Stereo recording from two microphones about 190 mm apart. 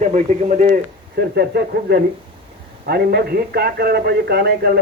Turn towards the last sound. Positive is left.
turn(degrees=-55)  # may be behind; listen again after turning